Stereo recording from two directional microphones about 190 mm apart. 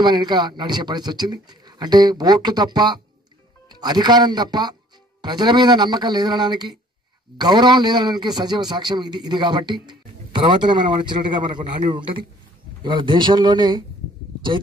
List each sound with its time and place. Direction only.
0.0 s speech: 25° right (ahead or behind)